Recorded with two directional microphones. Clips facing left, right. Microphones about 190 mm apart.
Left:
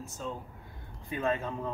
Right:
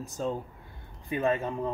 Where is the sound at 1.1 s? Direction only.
15° right (ahead or behind).